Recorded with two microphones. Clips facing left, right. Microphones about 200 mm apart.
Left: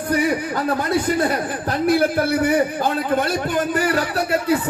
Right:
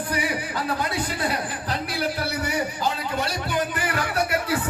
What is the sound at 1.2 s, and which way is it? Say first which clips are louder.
A man's voice: left 6 dB; 50° left (ahead or behind).